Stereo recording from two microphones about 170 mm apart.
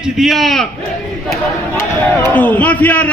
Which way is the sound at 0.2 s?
Centre (ahead or behind).